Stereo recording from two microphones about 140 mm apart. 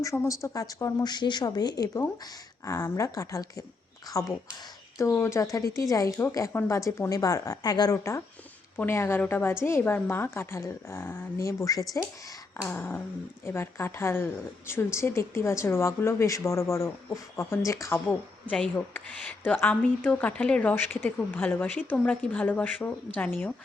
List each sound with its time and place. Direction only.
0.0 s speech: 20° left (ahead or behind)